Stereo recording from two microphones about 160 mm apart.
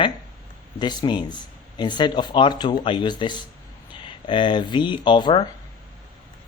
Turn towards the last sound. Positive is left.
turn(degrees=30)  # may be behind; listen again after turning